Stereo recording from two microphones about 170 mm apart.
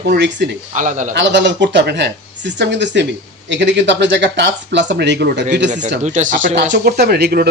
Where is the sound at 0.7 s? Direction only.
45° right (ahead or behind).